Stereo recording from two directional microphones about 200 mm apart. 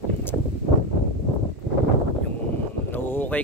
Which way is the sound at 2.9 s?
10° left (ahead or behind).